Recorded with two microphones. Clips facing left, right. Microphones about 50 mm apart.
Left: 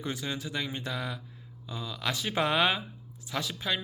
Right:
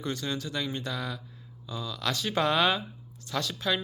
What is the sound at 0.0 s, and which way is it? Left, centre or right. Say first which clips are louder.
Speech: right 2 dB; centre.